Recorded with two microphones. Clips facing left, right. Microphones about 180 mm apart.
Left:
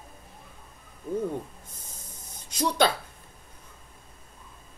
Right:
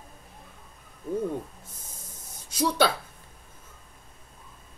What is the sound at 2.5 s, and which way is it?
Speech, 10° right (ahead or behind).